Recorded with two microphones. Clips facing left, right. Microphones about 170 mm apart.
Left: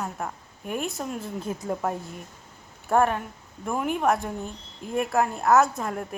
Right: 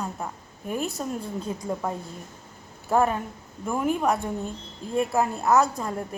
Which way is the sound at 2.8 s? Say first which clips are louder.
Even; centre (ahead or behind).